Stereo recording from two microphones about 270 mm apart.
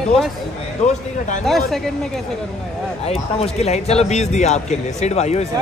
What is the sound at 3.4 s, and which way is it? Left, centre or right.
Speech, left.